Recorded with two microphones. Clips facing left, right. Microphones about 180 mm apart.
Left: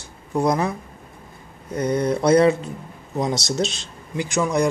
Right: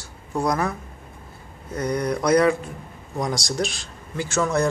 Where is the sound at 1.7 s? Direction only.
25° left (ahead or behind).